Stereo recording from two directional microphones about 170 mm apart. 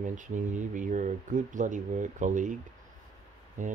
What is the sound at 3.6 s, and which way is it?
Speech, 50° right (ahead or behind).